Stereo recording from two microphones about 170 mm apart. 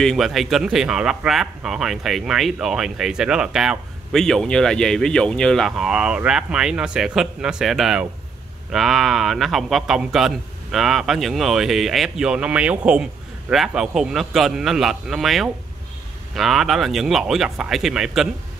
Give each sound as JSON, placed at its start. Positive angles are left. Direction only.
{"t": 0.0, "sound": "speech", "side_deg": 0}